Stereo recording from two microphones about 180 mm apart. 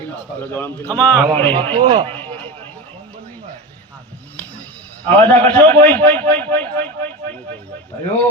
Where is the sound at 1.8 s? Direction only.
30° right (ahead or behind).